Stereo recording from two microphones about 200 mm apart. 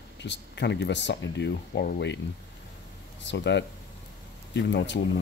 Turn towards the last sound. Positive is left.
turn(degrees=60)  # may be behind; listen again after turning